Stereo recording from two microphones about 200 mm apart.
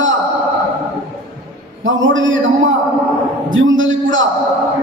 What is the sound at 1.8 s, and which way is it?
A woman's voice, 70° right (ahead or behind).